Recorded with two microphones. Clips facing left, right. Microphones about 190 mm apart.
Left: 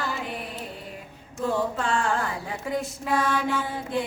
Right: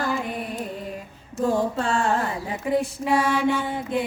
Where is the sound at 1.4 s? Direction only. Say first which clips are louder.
Right 4 dB; 45° right (ahead or behind).